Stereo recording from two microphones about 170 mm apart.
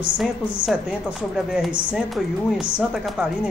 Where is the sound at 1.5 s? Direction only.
Centre (ahead or behind).